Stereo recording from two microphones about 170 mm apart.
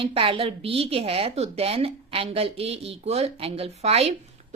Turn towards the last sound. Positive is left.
turn(degrees=-40)  # may be behind; listen again after turning